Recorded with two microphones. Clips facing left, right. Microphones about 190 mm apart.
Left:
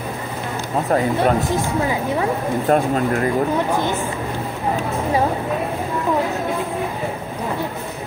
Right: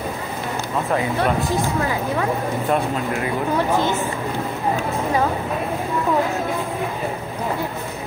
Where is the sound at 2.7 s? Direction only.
45° left (ahead or behind).